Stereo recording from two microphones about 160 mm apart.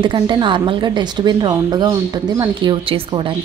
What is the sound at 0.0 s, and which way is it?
A woman's voice, 30° right (ahead or behind).